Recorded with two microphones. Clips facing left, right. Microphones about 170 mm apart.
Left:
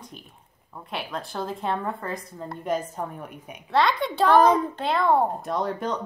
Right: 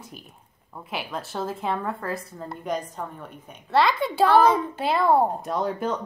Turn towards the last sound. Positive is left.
turn(degrees=-5)  # may be behind; listen again after turning